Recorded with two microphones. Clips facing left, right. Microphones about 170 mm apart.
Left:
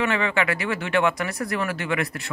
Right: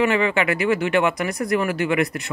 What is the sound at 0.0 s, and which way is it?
Speech, 15° right (ahead or behind).